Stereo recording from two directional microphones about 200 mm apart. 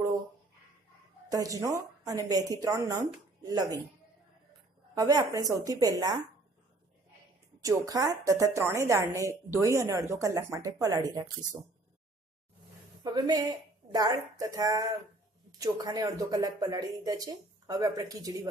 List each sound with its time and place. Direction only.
1.3 s a woman's voice: 15° right (ahead or behind)
4.9 s a woman's voice: 20° right (ahead or behind)
7.6 s a woman's voice: 15° right (ahead or behind)
13.0 s a woman's voice: 20° right (ahead or behind)